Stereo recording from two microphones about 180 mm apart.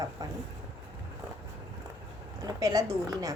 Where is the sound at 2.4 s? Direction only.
20° right (ahead or behind).